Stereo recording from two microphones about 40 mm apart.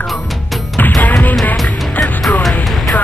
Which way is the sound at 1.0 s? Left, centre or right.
Left.